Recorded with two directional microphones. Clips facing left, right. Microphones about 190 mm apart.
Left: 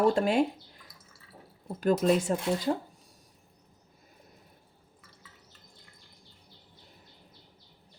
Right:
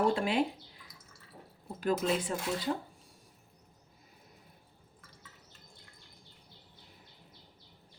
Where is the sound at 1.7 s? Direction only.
45° left (ahead or behind).